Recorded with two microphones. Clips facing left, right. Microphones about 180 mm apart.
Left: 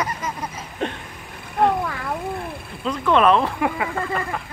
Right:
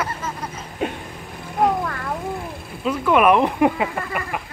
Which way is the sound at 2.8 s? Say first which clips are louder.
Right 1 dB; 10° right (ahead or behind).